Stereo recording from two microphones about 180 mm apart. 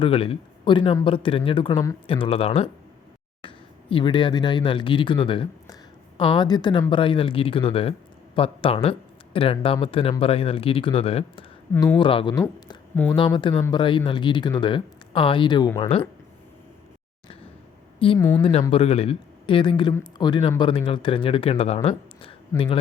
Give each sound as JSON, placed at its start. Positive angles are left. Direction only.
{"t": 0.0, "sound": "speech", "side_deg": 30}
{"t": 11.7, "sound": "speech", "side_deg": 10}
{"t": 11.9, "sound": "speech", "side_deg": 25}
{"t": 18.2, "sound": "speech", "side_deg": 15}
{"t": 18.7, "sound": "speech", "side_deg": 35}